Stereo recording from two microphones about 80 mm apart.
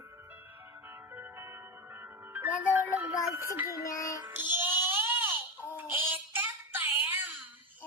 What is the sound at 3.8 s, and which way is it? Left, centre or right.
Music, left.